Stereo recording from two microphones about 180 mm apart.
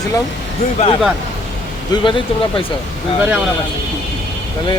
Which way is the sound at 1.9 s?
25° left (ahead or behind).